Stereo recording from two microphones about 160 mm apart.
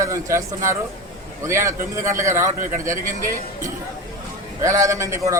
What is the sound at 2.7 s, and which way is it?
Speech, 55° right (ahead or behind).